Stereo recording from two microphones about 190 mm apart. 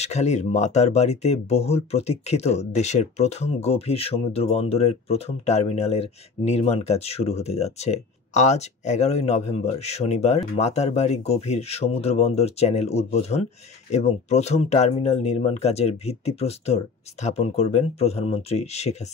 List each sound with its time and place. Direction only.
0.0 s speech: 35° left (ahead or behind)